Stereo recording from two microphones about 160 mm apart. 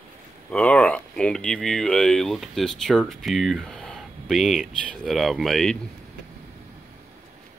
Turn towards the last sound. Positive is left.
turn(degrees=0)  # may be behind; listen again after turning